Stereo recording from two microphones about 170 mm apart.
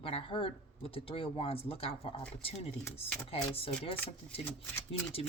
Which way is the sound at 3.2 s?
35° left (ahead or behind).